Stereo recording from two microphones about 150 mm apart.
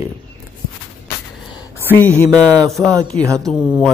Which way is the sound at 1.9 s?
10° left (ahead or behind).